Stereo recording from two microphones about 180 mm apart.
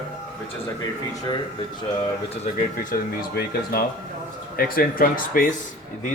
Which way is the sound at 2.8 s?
50° left (ahead or behind).